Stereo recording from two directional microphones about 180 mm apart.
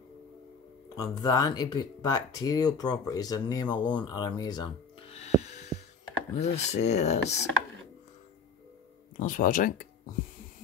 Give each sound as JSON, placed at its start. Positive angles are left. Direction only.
{"t": 0.8, "sound": "speech", "side_deg": 20}
{"t": 5.4, "sound": "a sound", "side_deg": 40}
{"t": 6.4, "sound": "speech", "side_deg": 40}
{"t": 9.1, "sound": "speech", "side_deg": 50}